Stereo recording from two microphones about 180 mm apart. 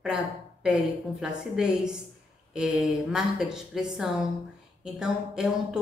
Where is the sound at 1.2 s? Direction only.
5° right (ahead or behind).